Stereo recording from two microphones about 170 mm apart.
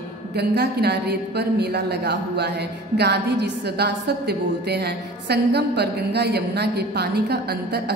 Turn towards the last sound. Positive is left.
turn(degrees=-70)  # may be behind; listen again after turning